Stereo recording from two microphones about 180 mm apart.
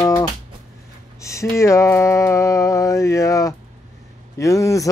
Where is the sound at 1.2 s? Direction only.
15° left (ahead or behind).